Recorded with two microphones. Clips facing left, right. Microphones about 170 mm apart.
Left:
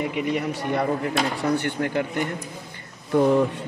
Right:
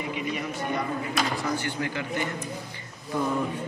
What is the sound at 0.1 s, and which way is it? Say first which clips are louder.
A man's voice: left 6 dB; 65° left (ahead or behind).